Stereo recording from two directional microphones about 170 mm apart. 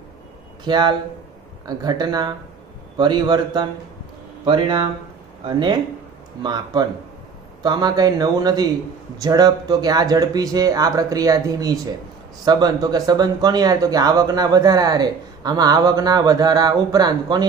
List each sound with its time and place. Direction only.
0.7 s speech: 25° right (ahead or behind)